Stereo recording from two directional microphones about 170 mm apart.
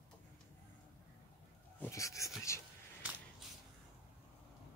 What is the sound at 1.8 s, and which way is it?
Dog, 20° left (ahead or behind).